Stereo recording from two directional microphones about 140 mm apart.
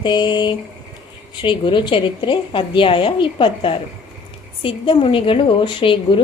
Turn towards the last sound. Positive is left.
turn(degrees=35)  # may be behind; listen again after turning